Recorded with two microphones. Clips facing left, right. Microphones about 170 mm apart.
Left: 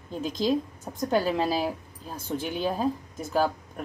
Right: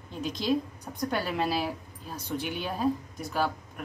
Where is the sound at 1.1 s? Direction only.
35° left (ahead or behind).